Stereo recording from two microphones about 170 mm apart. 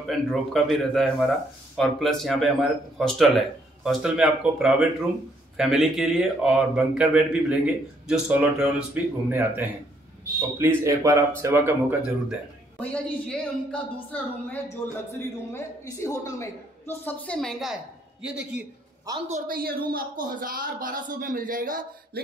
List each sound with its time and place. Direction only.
0.0 s speech: centre (ahead or behind)
12.7 s a woman's voice: 5° left (ahead or behind)
19.0 s a man's voice: 20° right (ahead or behind)
19.3 s speech: 60° right (ahead or behind)